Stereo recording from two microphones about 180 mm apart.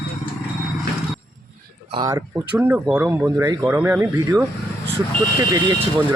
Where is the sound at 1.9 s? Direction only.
20° right (ahead or behind).